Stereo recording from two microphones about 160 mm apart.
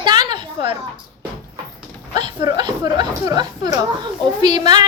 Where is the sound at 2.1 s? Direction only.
25° right (ahead or behind).